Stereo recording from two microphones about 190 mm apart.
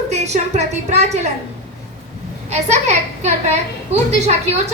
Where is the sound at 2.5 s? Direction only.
35° right (ahead or behind).